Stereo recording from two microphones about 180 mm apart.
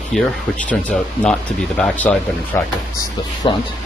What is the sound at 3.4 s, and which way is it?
Speech, 30° left (ahead or behind).